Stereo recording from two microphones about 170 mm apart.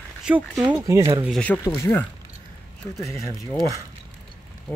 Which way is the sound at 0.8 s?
20° right (ahead or behind).